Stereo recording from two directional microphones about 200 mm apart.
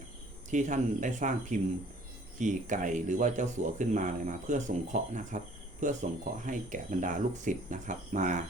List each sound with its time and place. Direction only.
0.5 s speech: 40° right (ahead or behind)